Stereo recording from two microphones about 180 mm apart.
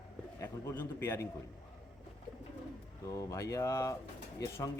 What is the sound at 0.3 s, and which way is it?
Speech, 15° left (ahead or behind).